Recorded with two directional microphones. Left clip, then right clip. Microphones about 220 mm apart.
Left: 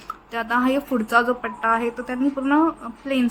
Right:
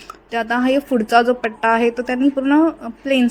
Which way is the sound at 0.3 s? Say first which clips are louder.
Right 4 dB; 20° right (ahead or behind).